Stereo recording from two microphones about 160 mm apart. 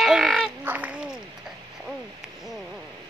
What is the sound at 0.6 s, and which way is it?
Quack, 10° right (ahead or behind).